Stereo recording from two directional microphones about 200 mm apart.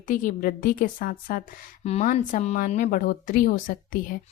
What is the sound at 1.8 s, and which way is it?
Speech, 35° left (ahead or behind).